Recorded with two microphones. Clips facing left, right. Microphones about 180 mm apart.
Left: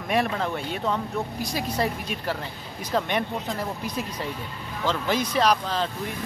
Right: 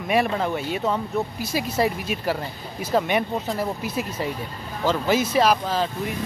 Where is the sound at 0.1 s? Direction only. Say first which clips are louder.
Right 3 dB; 5° right (ahead or behind).